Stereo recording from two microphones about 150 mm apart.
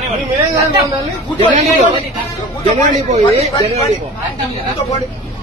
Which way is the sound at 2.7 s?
55° right (ahead or behind).